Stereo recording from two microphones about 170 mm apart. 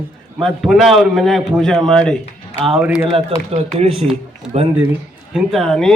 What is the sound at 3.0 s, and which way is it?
Speech, 35° right (ahead or behind).